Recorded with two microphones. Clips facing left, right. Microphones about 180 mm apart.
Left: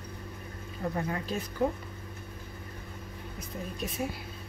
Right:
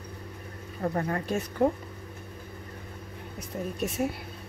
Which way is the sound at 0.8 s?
50° right (ahead or behind).